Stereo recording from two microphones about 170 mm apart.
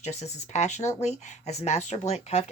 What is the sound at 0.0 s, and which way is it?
Speech, 40° left (ahead or behind).